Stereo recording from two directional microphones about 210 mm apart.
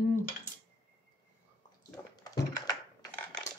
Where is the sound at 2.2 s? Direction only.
15° left (ahead or behind).